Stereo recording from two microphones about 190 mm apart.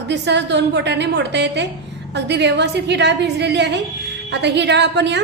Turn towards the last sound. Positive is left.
turn(degrees=-65)  # may be behind; listen again after turning